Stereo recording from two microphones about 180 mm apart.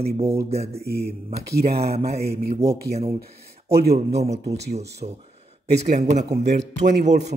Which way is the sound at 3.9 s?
35° right (ahead or behind).